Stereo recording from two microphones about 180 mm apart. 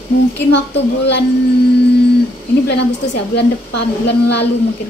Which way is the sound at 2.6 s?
70° left (ahead or behind).